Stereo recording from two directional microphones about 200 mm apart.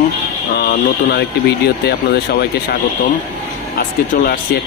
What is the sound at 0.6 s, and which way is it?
Speech, 50° left (ahead or behind).